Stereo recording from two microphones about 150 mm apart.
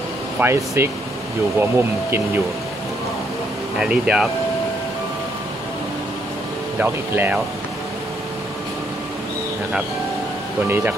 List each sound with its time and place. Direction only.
0.4 s speech: 15° right (ahead or behind)
3.8 s speech: 5° right (ahead or behind)
6.8 s speech: 10° right (ahead or behind)
10.7 s speech: 15° right (ahead or behind)